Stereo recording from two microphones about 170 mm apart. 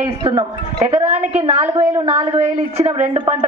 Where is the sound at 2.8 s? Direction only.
40° right (ahead or behind).